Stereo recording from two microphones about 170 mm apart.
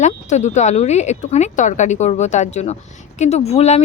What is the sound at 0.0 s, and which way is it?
Speech, 45° left (ahead or behind).